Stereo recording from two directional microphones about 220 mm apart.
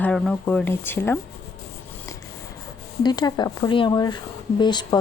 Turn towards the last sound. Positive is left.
turn(degrees=20)  # may be behind; listen again after turning